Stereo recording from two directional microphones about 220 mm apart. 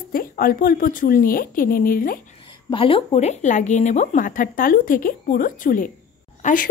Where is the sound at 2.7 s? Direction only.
25° left (ahead or behind).